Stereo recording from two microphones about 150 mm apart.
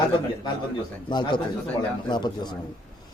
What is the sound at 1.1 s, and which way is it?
Speech, 30° left (ahead or behind).